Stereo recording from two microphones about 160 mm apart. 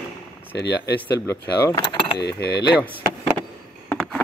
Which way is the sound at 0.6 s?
90° left.